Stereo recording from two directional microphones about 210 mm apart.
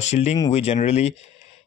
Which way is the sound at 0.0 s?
30° left (ahead or behind).